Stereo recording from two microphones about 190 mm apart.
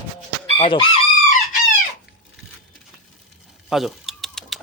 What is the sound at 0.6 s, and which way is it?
Chicken, 25° left (ahead or behind).